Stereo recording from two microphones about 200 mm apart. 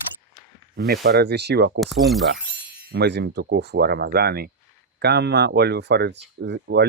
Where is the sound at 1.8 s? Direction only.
Centre (ahead or behind).